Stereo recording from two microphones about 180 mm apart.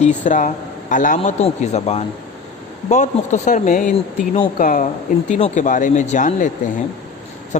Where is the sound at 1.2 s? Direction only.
40° left (ahead or behind).